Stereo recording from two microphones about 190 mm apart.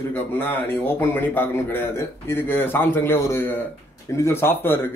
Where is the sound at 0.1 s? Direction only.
10° left (ahead or behind).